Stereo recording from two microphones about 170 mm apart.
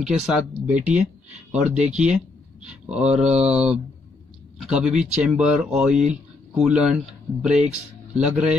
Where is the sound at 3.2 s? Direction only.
40° right (ahead or behind).